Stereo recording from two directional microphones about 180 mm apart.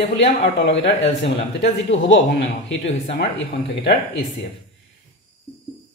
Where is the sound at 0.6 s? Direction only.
85° left.